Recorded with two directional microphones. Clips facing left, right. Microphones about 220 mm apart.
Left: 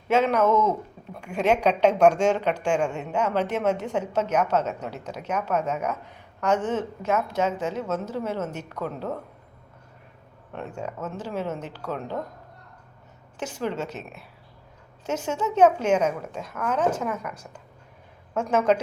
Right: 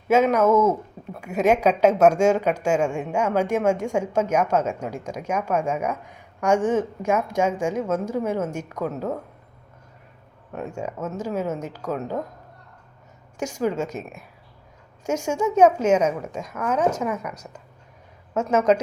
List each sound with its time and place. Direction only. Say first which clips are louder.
0.1 s a woman's voice: right 3 dB; 10° right (ahead or behind)
10.8 s a woman's voice: right 3 dB; 10° right (ahead or behind)
13.4 s a woman's voice: right 5 dB; 10° right (ahead or behind)
13.8 s speech: right 4 dB; 45° right (ahead or behind)
15.0 s a woman's voice: right 4 dB; 10° right (ahead or behind)
18.3 s a woman's voice: right 2 dB; 5° right (ahead or behind)